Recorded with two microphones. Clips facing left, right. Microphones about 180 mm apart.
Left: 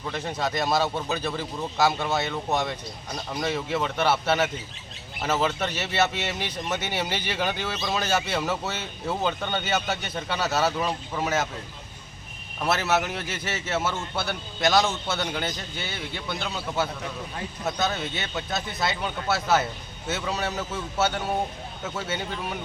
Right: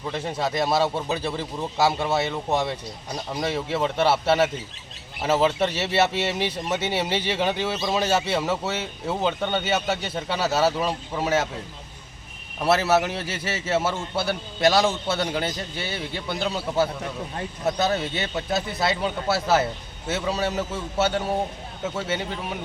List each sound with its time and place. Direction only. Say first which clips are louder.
0.1 s a man's voice: right 2 dB; 30° right (ahead or behind)
10.8 s speech: right 2 dB; 10° right (ahead or behind)
12.6 s a man's voice: right 4 dB; 30° right (ahead or behind)